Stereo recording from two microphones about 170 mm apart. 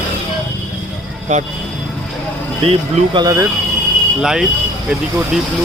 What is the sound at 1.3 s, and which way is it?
Speech, 45° right (ahead or behind).